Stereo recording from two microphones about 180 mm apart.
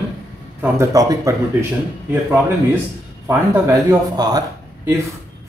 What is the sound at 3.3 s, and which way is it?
Speech, 20° right (ahead or behind).